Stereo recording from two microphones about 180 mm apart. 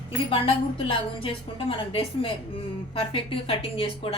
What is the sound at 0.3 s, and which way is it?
A woman's voice, 30° left (ahead or behind).